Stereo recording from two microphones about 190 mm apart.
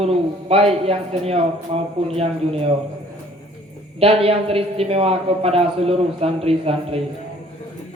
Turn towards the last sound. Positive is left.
turn(degrees=-30)  # may be behind; listen again after turning